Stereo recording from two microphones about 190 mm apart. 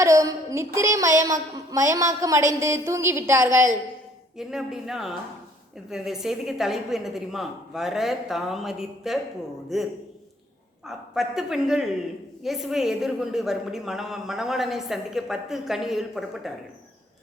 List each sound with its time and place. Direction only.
0.0 s a woman's voice: 15° right (ahead or behind)
4.4 s a woman's voice: centre (ahead or behind)